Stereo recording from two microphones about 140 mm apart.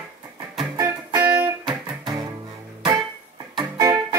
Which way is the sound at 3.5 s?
25° right (ahead or behind).